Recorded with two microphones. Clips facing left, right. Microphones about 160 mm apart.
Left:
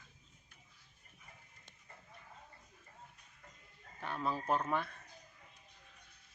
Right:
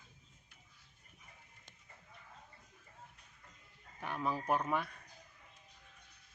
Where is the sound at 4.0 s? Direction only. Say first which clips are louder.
Even; 15° right (ahead or behind).